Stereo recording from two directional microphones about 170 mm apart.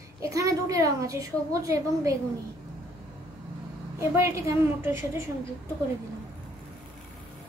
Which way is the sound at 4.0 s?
15° right (ahead or behind).